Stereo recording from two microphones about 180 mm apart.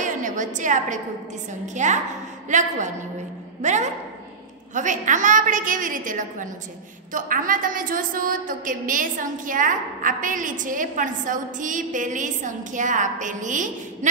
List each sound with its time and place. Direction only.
0.0 s a sound: 45° right (ahead or behind)
1.8 s a woman's voice: 40° right (ahead or behind)
3.6 s a woman's voice: 40° right (ahead or behind)